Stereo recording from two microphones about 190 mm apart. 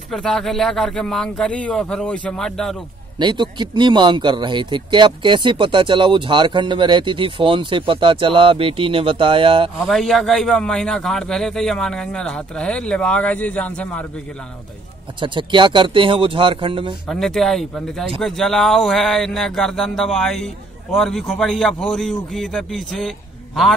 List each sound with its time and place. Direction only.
0.1 s speech: centre (ahead or behind)
3.2 s speech: 25° right (ahead or behind)
9.8 s speech: centre (ahead or behind)
15.1 s speech: 25° right (ahead or behind)
17.1 s speech: centre (ahead or behind)